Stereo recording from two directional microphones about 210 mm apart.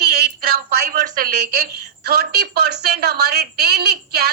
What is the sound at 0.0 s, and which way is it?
A woman's voice, 50° right (ahead or behind).